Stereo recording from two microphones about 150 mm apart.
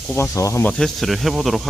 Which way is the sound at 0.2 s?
20° left (ahead or behind).